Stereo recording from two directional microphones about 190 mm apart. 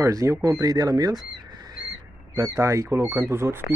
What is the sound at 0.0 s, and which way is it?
Speech, 15° right (ahead or behind).